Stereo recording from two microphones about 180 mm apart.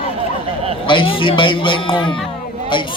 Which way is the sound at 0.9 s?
30° left (ahead or behind).